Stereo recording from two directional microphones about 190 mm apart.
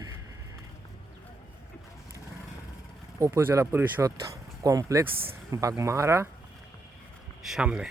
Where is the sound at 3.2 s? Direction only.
15° right (ahead or behind).